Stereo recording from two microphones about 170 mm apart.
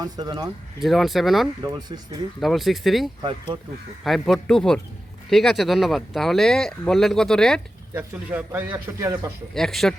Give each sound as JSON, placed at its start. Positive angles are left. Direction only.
{"t": 0.0, "sound": "speech", "side_deg": -25}
{"t": 0.8, "sound": "speech", "side_deg": 0}
{"t": 7.9, "sound": "speech", "side_deg": -10}
{"t": 9.6, "sound": "speech", "side_deg": 0}